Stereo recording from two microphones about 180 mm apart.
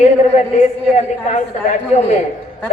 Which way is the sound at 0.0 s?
40° left (ahead or behind).